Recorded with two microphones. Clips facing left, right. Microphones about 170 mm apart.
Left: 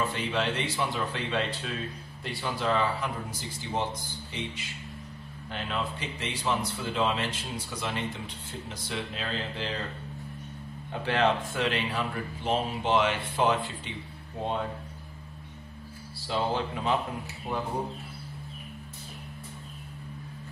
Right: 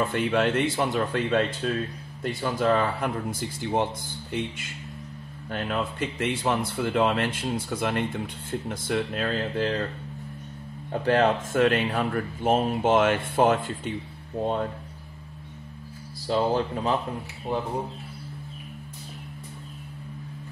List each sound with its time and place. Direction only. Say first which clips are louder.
0.0 s speech: right 6 dB; 50° right (ahead or behind)
10.9 s speech: right 4 dB; 45° right (ahead or behind)
16.3 s speech: right 5 dB; 40° right (ahead or behind)